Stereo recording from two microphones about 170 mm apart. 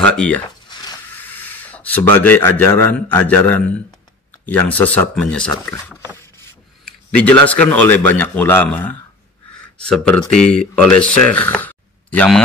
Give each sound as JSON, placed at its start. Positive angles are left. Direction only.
{"t": 0.0, "sound": "speech", "side_deg": 5}
{"t": 0.7, "sound": "a sound", "side_deg": 25}
{"t": 1.1, "sound": "speech", "side_deg": 10}